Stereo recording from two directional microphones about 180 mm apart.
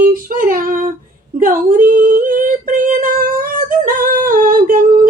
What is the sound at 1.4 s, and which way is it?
Female singing, 50° right (ahead or behind).